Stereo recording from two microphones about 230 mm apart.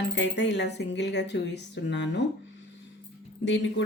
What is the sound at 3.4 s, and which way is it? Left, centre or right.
Speech, left.